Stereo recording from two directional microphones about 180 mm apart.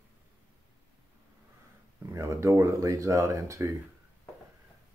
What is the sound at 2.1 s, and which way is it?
Speech, 15° right (ahead or behind).